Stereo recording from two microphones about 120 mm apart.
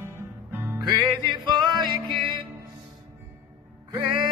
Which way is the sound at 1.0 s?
40° right (ahead or behind).